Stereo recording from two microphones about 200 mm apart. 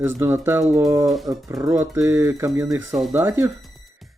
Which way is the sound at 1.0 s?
Centre (ahead or behind).